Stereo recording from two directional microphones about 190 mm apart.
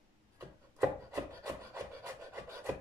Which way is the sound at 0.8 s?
15° right (ahead or behind).